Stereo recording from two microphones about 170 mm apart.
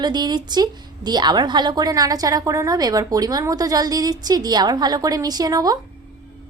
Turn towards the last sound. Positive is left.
turn(degrees=-20)  # may be behind; listen again after turning